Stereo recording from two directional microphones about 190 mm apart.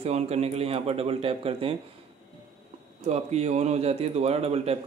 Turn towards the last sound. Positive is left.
turn(degrees=-30)  # may be behind; listen again after turning